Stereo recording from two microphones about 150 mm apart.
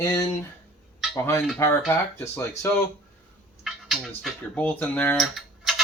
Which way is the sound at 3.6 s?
Centre (ahead or behind).